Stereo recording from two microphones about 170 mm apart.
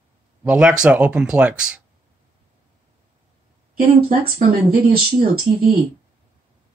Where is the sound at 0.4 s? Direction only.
5° right (ahead or behind).